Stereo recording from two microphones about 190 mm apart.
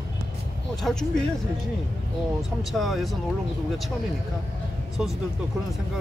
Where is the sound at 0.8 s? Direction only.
5° left (ahead or behind).